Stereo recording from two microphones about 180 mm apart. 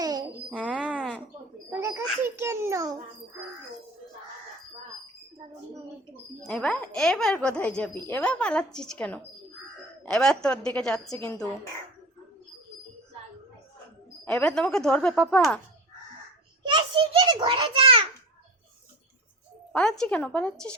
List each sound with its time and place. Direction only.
0.0 s a sound: 20° right (ahead or behind)
0.5 s a sound: 5° right (ahead or behind)
2.2 s babbling: 15° right (ahead or behind)
6.4 s a woman's voice: 5° left (ahead or behind)
14.3 s speech: 5° left (ahead or behind)
16.6 s a child's voice: 25° right (ahead or behind)
19.7 s speech: 5° left (ahead or behind)